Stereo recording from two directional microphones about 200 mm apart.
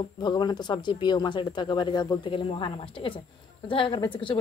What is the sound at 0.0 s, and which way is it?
Speech, 20° left (ahead or behind).